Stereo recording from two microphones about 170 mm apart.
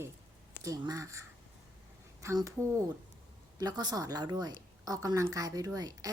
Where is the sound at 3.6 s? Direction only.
25° right (ahead or behind).